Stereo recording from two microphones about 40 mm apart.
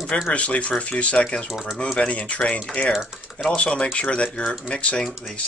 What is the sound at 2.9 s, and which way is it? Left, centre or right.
Speech, centre.